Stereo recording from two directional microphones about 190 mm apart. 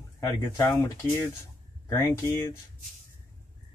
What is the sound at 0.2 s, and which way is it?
Speech, 15° left (ahead or behind).